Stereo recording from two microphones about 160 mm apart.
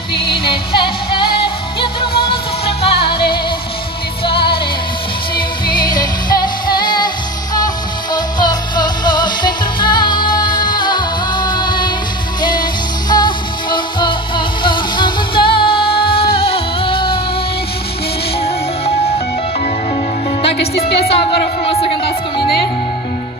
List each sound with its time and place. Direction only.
0.1 s music: 35° left (ahead or behind)
4.2 s music: 35° left (ahead or behind)
6.3 s music: 65° left (ahead or behind)
6.8 s music: 30° left (ahead or behind)
18.4 s music: 40° left (ahead or behind)
20.7 s music: 75° left (ahead or behind)